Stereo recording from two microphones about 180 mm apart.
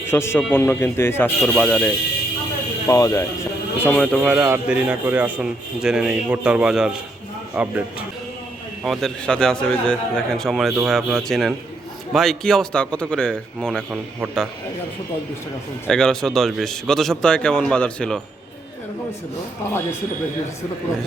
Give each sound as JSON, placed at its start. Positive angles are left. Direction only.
{"t": 0.0, "sound": "speech", "side_deg": 15}
{"t": 2.8, "sound": "speech", "side_deg": 20}
{"t": 3.8, "sound": "speech", "side_deg": 5}
{"t": 4.2, "sound": "a man's voice", "side_deg": -10}
{"t": 8.8, "sound": "speech", "side_deg": 0}
{"t": 15.9, "sound": "speech", "side_deg": 5}